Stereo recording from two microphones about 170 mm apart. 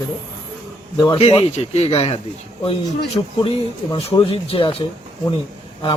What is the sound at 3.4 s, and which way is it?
Speech, 30° left (ahead or behind).